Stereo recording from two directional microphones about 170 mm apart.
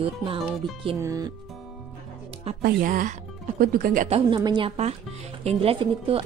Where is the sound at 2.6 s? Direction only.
55° right (ahead or behind).